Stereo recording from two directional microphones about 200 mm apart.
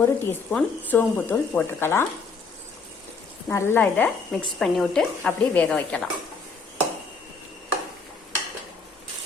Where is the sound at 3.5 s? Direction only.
10° left (ahead or behind).